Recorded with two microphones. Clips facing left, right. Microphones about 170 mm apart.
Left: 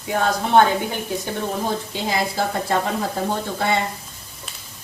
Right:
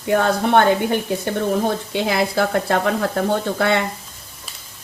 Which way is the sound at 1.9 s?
65° right (ahead or behind).